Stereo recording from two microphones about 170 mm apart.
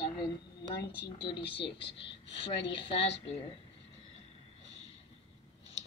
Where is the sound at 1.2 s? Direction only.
30° left (ahead or behind).